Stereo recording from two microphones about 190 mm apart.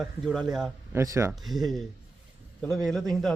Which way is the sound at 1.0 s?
15° right (ahead or behind).